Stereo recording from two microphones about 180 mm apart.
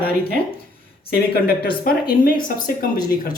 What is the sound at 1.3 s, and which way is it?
Speech, 60° left (ahead or behind).